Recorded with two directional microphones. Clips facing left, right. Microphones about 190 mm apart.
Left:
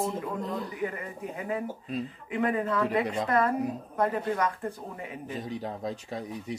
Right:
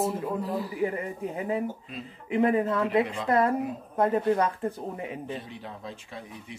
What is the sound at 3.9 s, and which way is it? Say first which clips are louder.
Speech: right 6 dB; 25° right (ahead or behind).